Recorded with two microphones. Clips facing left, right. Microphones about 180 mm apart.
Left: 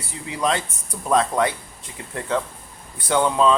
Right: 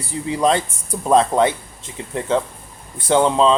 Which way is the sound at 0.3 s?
30° right (ahead or behind).